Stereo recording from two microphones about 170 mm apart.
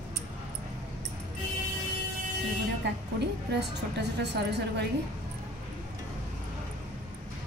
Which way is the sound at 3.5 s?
80° right.